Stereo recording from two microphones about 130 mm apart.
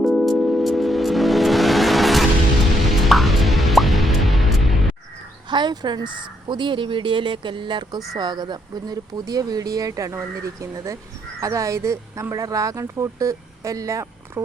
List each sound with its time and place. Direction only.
0.0 s music: centre (ahead or behind)
5.5 s speech: 35° right (ahead or behind)